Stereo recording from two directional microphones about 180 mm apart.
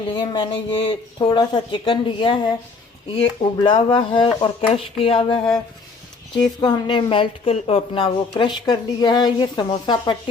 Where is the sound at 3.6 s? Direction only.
25° left (ahead or behind).